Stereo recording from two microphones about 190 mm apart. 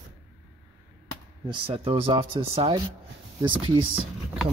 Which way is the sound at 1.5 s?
25° right (ahead or behind).